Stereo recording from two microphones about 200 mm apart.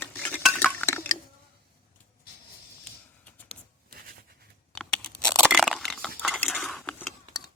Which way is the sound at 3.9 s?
50° right (ahead or behind).